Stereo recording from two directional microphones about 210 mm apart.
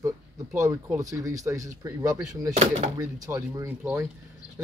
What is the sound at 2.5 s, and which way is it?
Speech, 30° right (ahead or behind).